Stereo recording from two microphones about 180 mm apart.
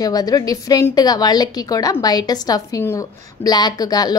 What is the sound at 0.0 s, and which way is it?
A woman's voice, 20° left (ahead or behind).